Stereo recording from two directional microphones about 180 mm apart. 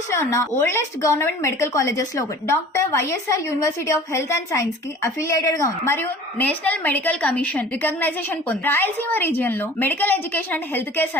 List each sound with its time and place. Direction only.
0.1 s a woman's voice: 15° left (ahead or behind)